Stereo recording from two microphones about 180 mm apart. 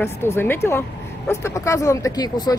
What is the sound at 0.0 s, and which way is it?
Speech, 15° left (ahead or behind).